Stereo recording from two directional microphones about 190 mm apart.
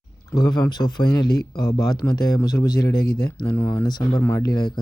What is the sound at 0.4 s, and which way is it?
A man's voice, 20° left (ahead or behind).